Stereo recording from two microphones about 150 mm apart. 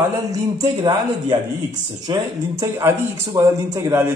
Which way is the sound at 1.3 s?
30° right (ahead or behind).